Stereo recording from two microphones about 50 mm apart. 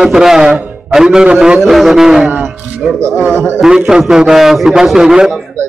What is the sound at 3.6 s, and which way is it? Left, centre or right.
A man's voice, centre.